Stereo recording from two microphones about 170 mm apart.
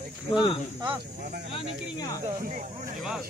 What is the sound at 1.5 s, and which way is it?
Speech, 25° left (ahead or behind).